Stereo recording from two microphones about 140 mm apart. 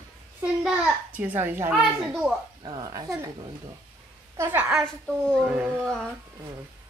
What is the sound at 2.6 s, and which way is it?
Speech, 30° right (ahead or behind).